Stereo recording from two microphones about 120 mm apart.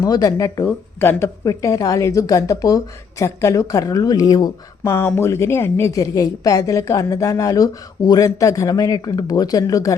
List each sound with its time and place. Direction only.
0.0 s a woman's voice: 30° left (ahead or behind)
4.8 s a woman's voice: 20° left (ahead or behind)